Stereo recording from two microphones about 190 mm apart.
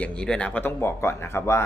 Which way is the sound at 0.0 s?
5° left (ahead or behind).